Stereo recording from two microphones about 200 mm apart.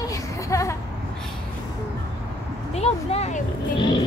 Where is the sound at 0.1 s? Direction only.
15° left (ahead or behind).